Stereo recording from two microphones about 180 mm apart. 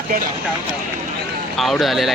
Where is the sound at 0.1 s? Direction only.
55° right (ahead or behind).